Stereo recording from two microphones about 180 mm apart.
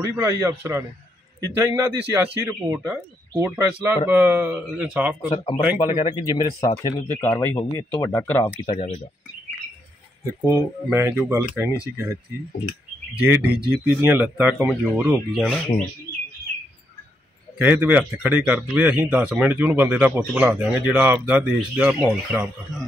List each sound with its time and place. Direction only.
0.0 s speech: 15° right (ahead or behind)
5.3 s speech: 30° left (ahead or behind)
8.7 s speech: 35° left (ahead or behind)
10.4 s speech: 15° right (ahead or behind)
13.2 s speech: 5° right (ahead or behind)
15.4 s speech: 5° left (ahead or behind)
17.6 s speech: 10° right (ahead or behind)